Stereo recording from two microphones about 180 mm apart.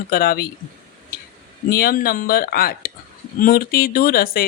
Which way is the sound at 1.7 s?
55° left (ahead or behind).